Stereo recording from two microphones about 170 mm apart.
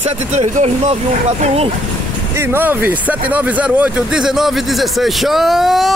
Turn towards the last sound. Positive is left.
turn(degrees=0)  # may be behind; listen again after turning